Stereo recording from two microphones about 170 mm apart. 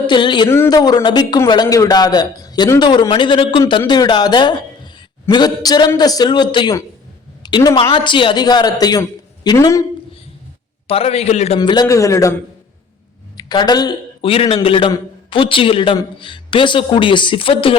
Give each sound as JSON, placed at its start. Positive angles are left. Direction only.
{"t": 0.1, "sound": "a sound", "side_deg": 25}
{"t": 0.4, "sound": "a man's voice", "side_deg": 15}
{"t": 10.8, "sound": "a man's voice", "side_deg": 35}
{"t": 11.6, "sound": "a man's voice", "side_deg": 25}